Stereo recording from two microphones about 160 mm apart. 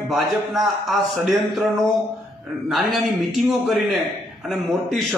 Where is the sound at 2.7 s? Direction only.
Centre (ahead or behind).